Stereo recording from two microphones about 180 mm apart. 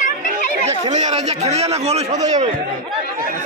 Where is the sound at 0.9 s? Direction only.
40° right (ahead or behind).